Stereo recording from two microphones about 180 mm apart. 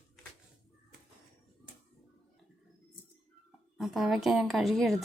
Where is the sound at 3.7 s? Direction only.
Centre (ahead or behind).